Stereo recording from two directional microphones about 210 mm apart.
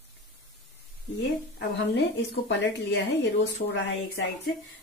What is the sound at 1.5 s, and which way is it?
A woman's voice, 60° left (ahead or behind).